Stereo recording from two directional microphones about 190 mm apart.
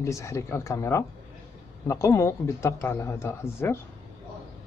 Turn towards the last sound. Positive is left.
turn(degrees=15)  # may be behind; listen again after turning